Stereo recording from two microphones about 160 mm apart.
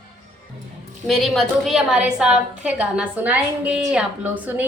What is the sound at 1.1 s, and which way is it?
A woman's voice, centre (ahead or behind).